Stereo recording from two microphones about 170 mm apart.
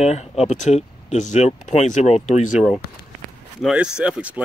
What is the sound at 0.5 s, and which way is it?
Speech, 40° left (ahead or behind).